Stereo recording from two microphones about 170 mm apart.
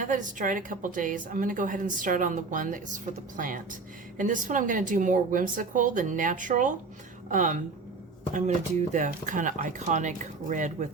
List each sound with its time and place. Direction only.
0.0 s a woman's voice: 50° right (ahead or behind)